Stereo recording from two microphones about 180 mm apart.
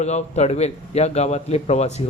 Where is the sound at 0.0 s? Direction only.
40° left (ahead or behind).